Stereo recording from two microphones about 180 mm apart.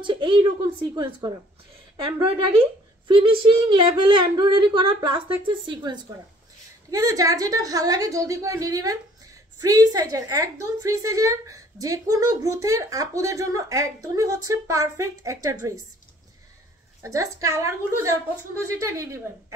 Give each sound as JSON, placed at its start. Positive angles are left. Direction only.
{"t": 0.0, "sound": "a woman's voice", "side_deg": -25}
{"t": 2.2, "sound": "a woman's voice", "side_deg": -30}
{"t": 17.0, "sound": "a woman's voice", "side_deg": -15}